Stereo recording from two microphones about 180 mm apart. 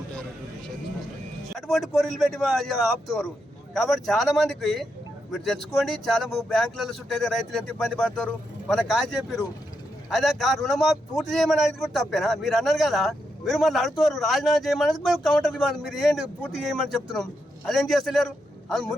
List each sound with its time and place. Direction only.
1.5 s a man's voice: 5° left (ahead or behind)